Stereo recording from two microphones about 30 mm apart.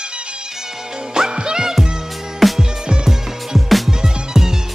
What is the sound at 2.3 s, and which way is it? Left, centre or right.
Music, centre.